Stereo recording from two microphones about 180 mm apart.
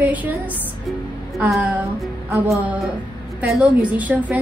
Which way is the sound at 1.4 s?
10° right (ahead or behind).